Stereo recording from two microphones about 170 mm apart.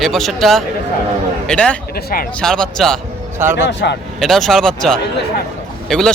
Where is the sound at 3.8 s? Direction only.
75° left (ahead or behind).